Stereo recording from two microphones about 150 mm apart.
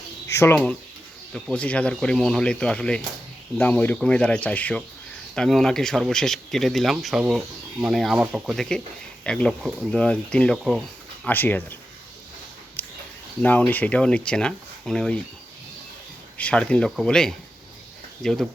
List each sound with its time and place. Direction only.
0.3 s speech: 15° left (ahead or behind)
1.3 s speech: 5° left (ahead or behind)
11.3 s speech: 10° left (ahead or behind)
12.8 s a sound: 10° left (ahead or behind)
13.4 s speech: 10° left (ahead or behind)
16.4 s speech: 5° left (ahead or behind)